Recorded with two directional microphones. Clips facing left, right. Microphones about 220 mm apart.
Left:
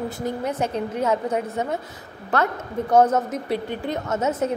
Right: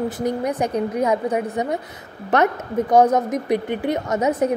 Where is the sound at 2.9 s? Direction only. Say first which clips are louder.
Right 2 dB; 15° right (ahead or behind).